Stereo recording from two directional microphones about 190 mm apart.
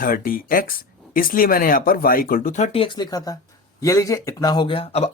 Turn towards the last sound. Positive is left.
turn(degrees=30)  # may be behind; listen again after turning